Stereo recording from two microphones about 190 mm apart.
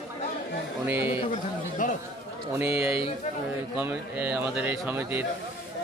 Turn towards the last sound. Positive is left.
turn(degrees=-10)  # may be behind; listen again after turning